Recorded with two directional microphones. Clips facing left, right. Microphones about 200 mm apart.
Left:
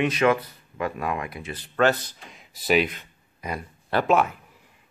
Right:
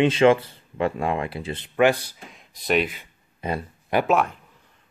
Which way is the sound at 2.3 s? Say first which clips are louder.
Left 1 dB; centre (ahead or behind).